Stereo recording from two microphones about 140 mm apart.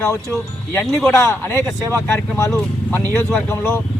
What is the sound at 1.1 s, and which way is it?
Speech, 20° left (ahead or behind).